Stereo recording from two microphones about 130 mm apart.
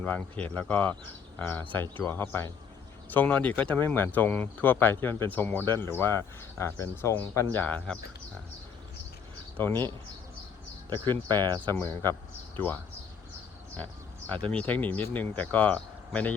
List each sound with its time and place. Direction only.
0.0 s speech: 10° left (ahead or behind)
9.6 s speech: 15° left (ahead or behind)
11.3 s speech: 15° left (ahead or behind)